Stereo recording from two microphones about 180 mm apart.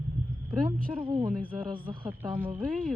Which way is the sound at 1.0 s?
30° right (ahead or behind).